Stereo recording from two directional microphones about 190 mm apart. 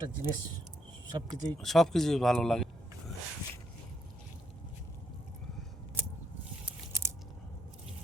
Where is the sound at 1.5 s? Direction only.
Centre (ahead or behind).